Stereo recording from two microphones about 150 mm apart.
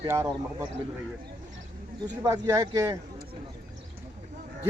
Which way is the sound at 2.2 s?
25° right (ahead or behind).